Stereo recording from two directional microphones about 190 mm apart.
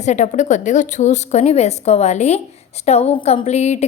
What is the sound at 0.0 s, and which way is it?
A woman's voice, 40° left (ahead or behind).